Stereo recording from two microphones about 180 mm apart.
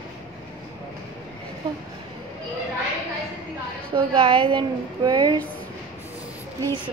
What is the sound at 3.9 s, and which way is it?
A woman's voice, 30° right (ahead or behind).